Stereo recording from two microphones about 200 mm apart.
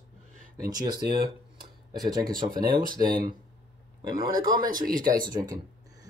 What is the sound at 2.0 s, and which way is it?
Speech, 20° right (ahead or behind).